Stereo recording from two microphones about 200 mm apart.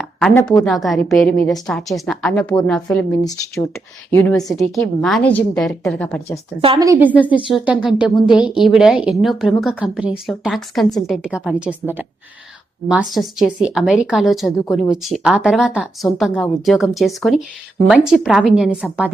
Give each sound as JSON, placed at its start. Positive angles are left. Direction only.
{"t": 0.0, "sound": "a woman's voice", "side_deg": 5}
{"t": 4.5, "sound": "a woman's voice", "side_deg": 0}
{"t": 6.6, "sound": "a woman's voice", "side_deg": -25}
{"t": 6.8, "sound": "a woman's voice", "side_deg": -15}
{"t": 7.4, "sound": "a woman's voice", "side_deg": -5}